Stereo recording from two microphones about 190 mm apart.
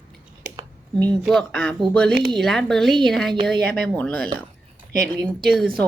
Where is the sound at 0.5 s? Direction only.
20° right (ahead or behind).